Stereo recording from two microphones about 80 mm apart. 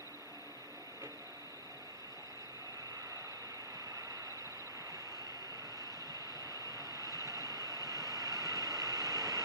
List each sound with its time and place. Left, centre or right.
6.1 s vehicle: right